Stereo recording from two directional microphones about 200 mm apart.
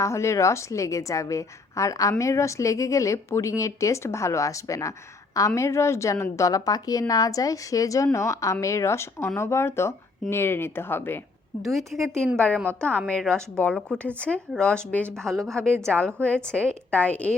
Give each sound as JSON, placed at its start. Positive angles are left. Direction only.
{"t": 0.0, "sound": "a woman's voice", "side_deg": 15}
{"t": 11.6, "sound": "a woman's voice", "side_deg": 0}
{"t": 11.9, "sound": "a woman's voice", "side_deg": -10}
{"t": 12.4, "sound": "a woman's voice", "side_deg": 5}